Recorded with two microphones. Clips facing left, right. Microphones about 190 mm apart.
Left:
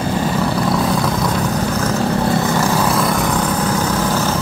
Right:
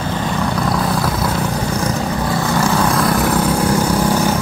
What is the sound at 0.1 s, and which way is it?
Vehicle, 5° left (ahead or behind).